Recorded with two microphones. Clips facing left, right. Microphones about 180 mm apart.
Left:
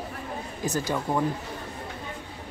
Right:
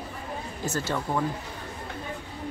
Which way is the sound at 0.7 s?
15° left (ahead or behind).